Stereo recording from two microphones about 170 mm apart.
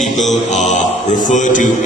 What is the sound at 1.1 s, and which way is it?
Speech, 45° left (ahead or behind).